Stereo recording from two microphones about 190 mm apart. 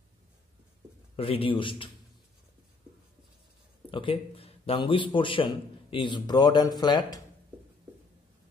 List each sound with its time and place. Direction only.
1.1 s a man's voice: 30° left (ahead or behind)
3.9 s a man's voice: 30° left (ahead or behind)